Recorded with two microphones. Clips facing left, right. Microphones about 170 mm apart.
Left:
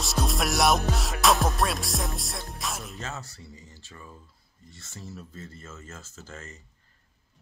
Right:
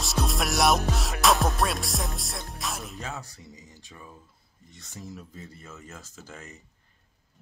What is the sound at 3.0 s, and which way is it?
Speech, 10° right (ahead or behind).